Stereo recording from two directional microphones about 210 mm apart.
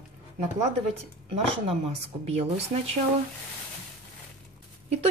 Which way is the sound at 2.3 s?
30° right (ahead or behind).